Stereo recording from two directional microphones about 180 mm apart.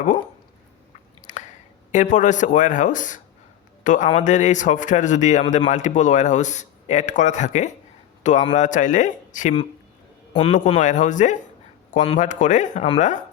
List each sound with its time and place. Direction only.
1.3 s a sound: 45° left (ahead or behind)
1.9 s speech: 45° left (ahead or behind)
10.3 s a man's voice: 30° left (ahead or behind)
10.8 s speech: 45° left (ahead or behind)